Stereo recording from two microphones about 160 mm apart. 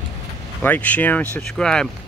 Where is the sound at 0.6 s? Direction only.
10° left (ahead or behind).